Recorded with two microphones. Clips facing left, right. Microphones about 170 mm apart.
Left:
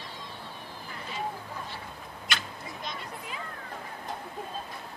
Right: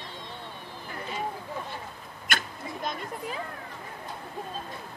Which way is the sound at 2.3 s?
50° right (ahead or behind).